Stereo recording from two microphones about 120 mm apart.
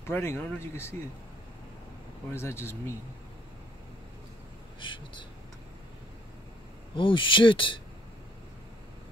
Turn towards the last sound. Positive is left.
turn(degrees=45)  # may be behind; listen again after turning